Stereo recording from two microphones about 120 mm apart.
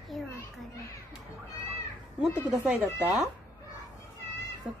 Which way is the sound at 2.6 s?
5° right (ahead or behind).